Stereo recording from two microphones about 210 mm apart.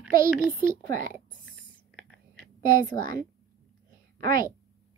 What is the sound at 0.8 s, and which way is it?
Speech, 40° right (ahead or behind).